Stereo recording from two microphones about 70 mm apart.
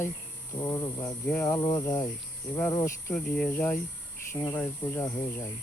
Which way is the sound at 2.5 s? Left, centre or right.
Centre.